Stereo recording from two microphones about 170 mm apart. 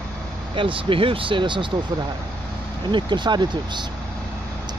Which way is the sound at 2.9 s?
25° right (ahead or behind).